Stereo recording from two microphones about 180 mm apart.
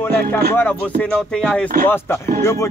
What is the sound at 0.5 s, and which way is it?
Speech, 10° left (ahead or behind).